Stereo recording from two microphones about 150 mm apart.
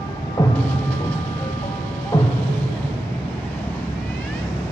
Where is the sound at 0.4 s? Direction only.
25° left (ahead or behind).